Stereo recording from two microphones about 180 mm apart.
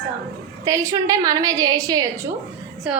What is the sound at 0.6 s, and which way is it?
A woman's voice, 15° right (ahead or behind).